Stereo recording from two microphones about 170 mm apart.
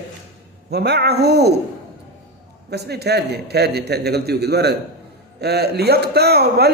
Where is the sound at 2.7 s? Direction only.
75° right (ahead or behind).